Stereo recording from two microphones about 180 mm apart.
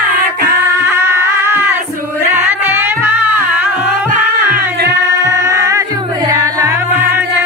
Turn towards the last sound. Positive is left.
turn(degrees=-10)  # may be behind; listen again after turning